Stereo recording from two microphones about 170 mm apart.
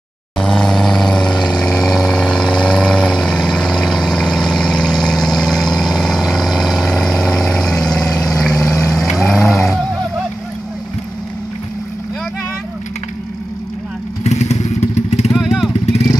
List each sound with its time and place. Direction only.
0.4 s vehicle: 5° left (ahead or behind)
8.5 s vehicle: 15° left (ahead or behind)
8.9 s vehicle: centre (ahead or behind)
14.2 s motorcycle: 40° left (ahead or behind)
15.3 s vehicle: centre (ahead or behind)